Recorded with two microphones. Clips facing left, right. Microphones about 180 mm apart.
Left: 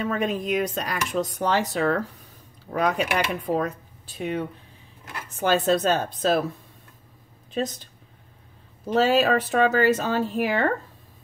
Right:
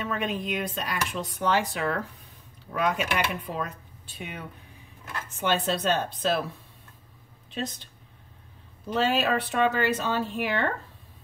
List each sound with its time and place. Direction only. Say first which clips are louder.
0.0 s speech: left 4 dB; 40° left (ahead or behind)
8.9 s speech: left 5 dB; 40° left (ahead or behind)